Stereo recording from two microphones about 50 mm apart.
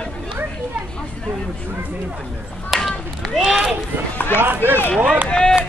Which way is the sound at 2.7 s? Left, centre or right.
Centre.